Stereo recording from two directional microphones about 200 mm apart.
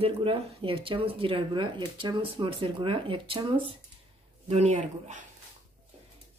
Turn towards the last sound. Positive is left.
turn(degrees=-35)  # may be behind; listen again after turning